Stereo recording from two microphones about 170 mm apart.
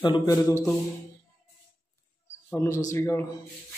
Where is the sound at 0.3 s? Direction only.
20° left (ahead or behind).